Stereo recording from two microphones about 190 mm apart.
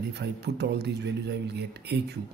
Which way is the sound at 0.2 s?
60° right (ahead or behind).